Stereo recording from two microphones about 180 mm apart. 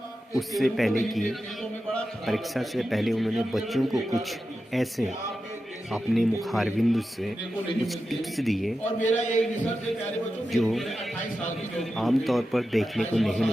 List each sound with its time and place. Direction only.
0.3 s a man's voice: centre (ahead or behind)
8.8 s a man's voice: 40° left (ahead or behind)
10.5 s a man's voice: centre (ahead or behind)